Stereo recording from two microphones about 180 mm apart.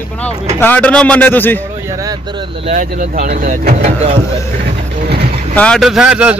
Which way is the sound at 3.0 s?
55° right (ahead or behind).